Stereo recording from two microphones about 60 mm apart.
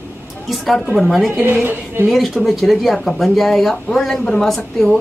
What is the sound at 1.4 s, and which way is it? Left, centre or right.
Speech, right.